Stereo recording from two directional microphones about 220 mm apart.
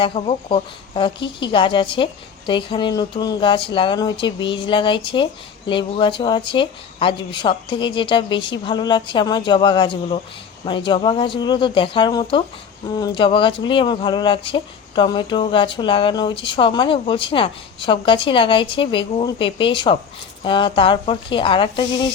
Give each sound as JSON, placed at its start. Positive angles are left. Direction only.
{"t": 0.0, "sound": "speech", "side_deg": 25}